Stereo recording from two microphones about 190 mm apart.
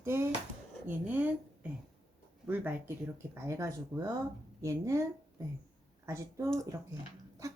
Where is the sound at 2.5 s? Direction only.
10° right (ahead or behind).